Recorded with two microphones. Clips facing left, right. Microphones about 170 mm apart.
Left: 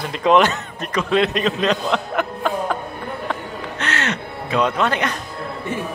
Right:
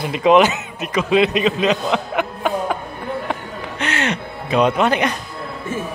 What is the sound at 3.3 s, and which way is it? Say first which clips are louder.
Music: right 1 dB; 15° right (ahead or behind).